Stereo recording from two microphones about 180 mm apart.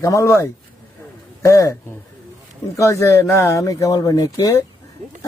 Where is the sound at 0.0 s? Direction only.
15° left (ahead or behind).